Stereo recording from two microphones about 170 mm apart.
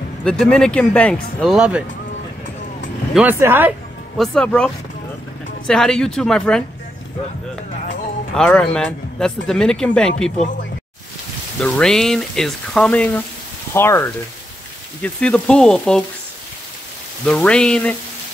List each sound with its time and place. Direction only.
0.2 s speech: 5° left (ahead or behind)
3.2 s speech: 10° right (ahead or behind)
4.2 s speech: 5° left (ahead or behind)
8.4 s speech: 5° left (ahead or behind)
11.6 s speech: 5° left (ahead or behind)
17.3 s speech: 5° left (ahead or behind)